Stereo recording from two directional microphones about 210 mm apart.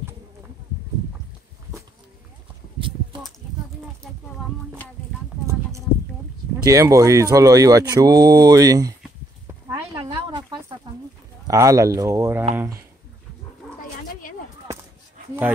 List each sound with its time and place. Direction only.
5.5 s a sound: 15° right (ahead or behind)
6.6 s speech: 15° right (ahead or behind)
9.5 s snake: 20° right (ahead or behind)
11.4 s speech: 15° right (ahead or behind)
13.6 s dog: 5° left (ahead or behind)